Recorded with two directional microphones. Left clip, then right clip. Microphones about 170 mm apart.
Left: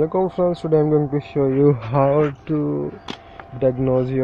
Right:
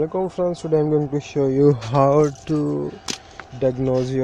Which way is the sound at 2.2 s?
30° right (ahead or behind).